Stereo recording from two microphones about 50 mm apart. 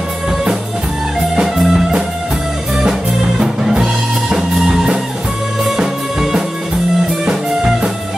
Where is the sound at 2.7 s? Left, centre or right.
Centre.